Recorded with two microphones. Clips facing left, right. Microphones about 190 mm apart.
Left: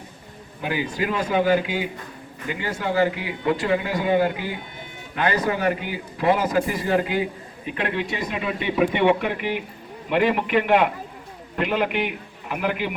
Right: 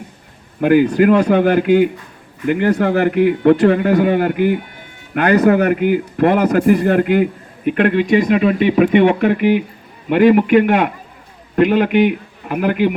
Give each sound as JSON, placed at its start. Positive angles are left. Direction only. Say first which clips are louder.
{"t": 0.6, "sound": "a man's voice", "louder": "right 14 dB", "side_deg": -55}